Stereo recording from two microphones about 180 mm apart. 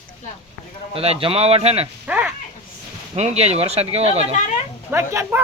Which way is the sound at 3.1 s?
35° right (ahead or behind).